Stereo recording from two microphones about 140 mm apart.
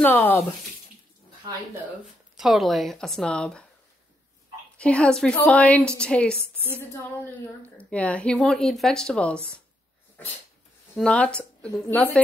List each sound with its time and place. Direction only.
0.0 s speech: 15° left (ahead or behind)
2.3 s speech: centre (ahead or behind)
4.7 s speech: 10° left (ahead or behind)
6.8 s a woman's voice: 20° left (ahead or behind)
7.7 s speech: 10° left (ahead or behind)
11.0 s speech: 10° left (ahead or behind)